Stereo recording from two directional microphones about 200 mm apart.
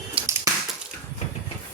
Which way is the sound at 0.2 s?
25° right (ahead or behind).